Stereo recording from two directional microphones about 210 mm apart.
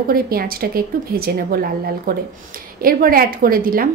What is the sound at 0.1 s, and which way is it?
A woman's voice, 45° right (ahead or behind).